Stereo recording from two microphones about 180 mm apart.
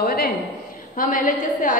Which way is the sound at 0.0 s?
55° left (ahead or behind).